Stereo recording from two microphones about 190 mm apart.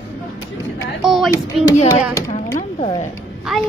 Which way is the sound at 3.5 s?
Centre (ahead or behind).